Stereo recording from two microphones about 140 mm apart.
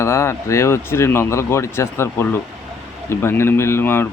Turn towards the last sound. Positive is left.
turn(degrees=15)  # may be behind; listen again after turning